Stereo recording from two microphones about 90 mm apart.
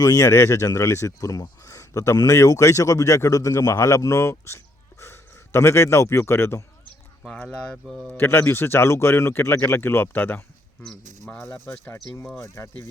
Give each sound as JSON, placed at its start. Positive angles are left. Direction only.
{"t": 0.0, "sound": "speech", "side_deg": 40}
{"t": 7.3, "sound": "speech", "side_deg": 10}
{"t": 8.1, "sound": "speech", "side_deg": 25}
{"t": 11.6, "sound": "speech", "side_deg": 30}